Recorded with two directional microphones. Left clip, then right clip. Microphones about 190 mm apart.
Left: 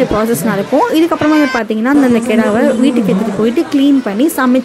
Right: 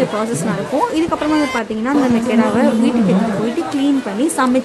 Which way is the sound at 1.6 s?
25° left (ahead or behind).